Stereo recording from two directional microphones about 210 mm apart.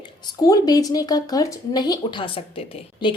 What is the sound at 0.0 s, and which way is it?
Speech, 20° left (ahead or behind).